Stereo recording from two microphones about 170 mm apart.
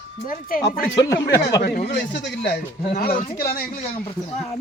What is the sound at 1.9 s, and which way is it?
Speech, 90° left.